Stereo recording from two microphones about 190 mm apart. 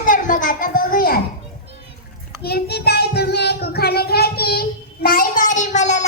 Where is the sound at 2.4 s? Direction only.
55° left (ahead or behind).